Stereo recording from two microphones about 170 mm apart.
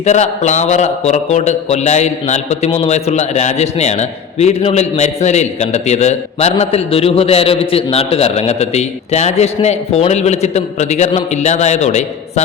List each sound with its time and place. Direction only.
0.0 s a man's voice: 40° left (ahead or behind)